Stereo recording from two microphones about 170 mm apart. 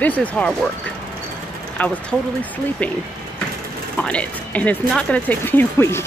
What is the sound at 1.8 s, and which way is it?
Speech, 10° left (ahead or behind).